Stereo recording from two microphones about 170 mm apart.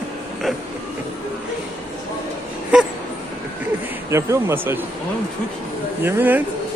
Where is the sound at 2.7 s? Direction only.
5° right (ahead or behind).